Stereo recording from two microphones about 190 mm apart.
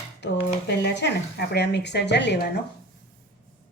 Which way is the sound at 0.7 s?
65° left (ahead or behind).